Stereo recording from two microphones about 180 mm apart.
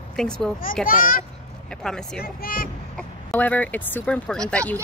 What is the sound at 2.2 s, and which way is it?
Speech, 55° left (ahead or behind).